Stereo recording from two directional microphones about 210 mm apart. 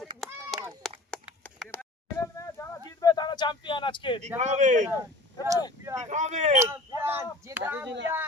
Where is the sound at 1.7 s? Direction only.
10° left (ahead or behind).